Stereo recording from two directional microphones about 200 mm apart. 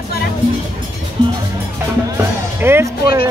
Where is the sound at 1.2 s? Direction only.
20° right (ahead or behind).